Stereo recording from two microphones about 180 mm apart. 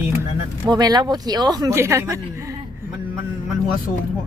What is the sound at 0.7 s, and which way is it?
Speech, 20° right (ahead or behind).